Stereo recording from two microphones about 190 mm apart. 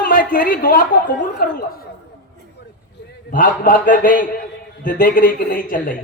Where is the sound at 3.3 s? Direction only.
45° left (ahead or behind).